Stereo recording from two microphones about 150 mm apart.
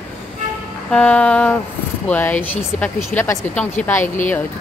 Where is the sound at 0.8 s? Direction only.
5° left (ahead or behind).